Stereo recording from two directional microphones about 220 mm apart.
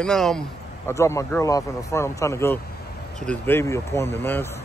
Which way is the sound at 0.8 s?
15° left (ahead or behind).